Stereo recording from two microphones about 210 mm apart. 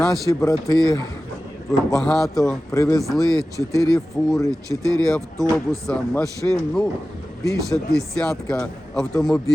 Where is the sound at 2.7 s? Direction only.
15° left (ahead or behind).